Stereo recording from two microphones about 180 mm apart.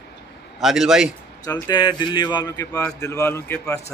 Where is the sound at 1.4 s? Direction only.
25° left (ahead or behind).